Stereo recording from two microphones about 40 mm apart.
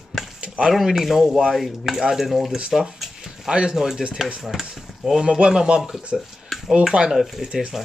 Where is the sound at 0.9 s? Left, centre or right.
Centre.